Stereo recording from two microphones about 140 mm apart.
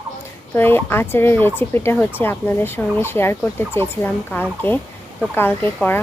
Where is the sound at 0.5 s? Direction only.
15° left (ahead or behind).